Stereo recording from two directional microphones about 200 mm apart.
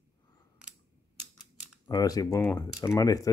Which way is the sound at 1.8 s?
20° left (ahead or behind).